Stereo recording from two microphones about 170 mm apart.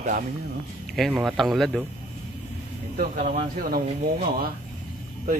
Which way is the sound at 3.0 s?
50° right (ahead or behind).